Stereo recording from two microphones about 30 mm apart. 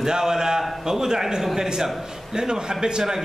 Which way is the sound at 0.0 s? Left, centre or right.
Centre.